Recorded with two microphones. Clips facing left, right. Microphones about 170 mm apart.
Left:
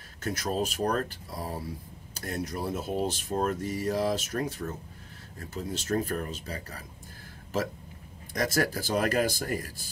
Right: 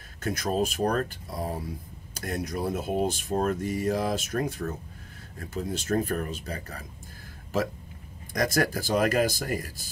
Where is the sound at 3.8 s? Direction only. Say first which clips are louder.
Even; 55° right (ahead or behind).